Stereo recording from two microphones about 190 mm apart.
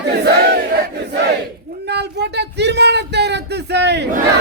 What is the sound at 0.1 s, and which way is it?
Battle cry, 60° right (ahead or behind).